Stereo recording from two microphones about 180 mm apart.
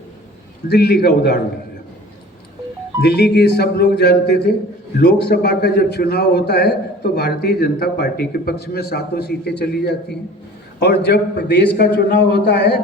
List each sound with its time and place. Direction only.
0.7 s a man's voice: 60° left (ahead or behind)
3.0 s a man's voice: 65° left (ahead or behind)